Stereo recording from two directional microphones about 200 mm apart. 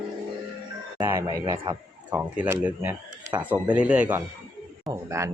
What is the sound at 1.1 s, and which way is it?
Speech, 15° right (ahead or behind).